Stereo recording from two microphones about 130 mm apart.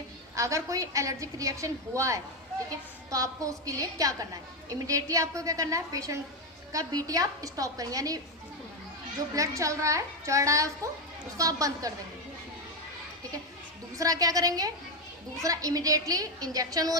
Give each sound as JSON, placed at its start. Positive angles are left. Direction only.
{"t": 0.3, "sound": "a woman's voice", "side_deg": -25}
{"t": 9.3, "sound": "a woman's voice", "side_deg": -25}
{"t": 14.0, "sound": "a woman's voice", "side_deg": -25}